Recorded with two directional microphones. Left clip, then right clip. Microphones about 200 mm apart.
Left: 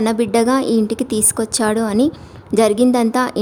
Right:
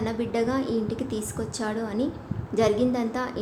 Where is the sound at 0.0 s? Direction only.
60° left (ahead or behind).